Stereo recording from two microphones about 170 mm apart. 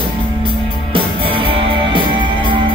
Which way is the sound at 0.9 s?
30° right (ahead or behind).